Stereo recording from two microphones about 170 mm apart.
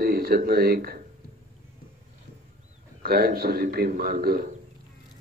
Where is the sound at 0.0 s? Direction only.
60° right (ahead or behind).